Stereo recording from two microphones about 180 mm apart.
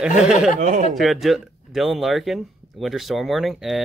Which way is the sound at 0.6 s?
45° right (ahead or behind).